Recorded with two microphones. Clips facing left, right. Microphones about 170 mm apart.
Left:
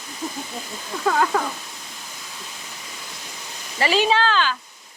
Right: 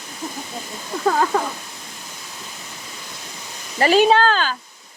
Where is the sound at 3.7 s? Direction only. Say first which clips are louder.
Right 5 dB; 45° right (ahead or behind).